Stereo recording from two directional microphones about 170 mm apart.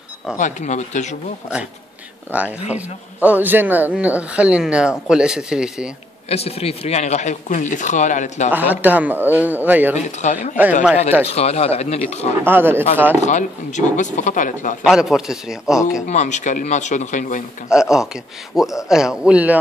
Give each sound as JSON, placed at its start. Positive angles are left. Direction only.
{"t": 0.4, "sound": "speech", "side_deg": 45}
{"t": 2.3, "sound": "speech", "side_deg": -10}
{"t": 6.2, "sound": "speech", "side_deg": 35}
{"t": 8.5, "sound": "speech", "side_deg": -10}
{"t": 9.9, "sound": "speech", "side_deg": 45}
{"t": 12.4, "sound": "speech", "side_deg": -10}
{"t": 13.2, "sound": "speech", "side_deg": 45}
{"t": 14.9, "sound": "speech", "side_deg": 0}
{"t": 16.1, "sound": "speech", "side_deg": 45}
{"t": 17.6, "sound": "speech", "side_deg": -5}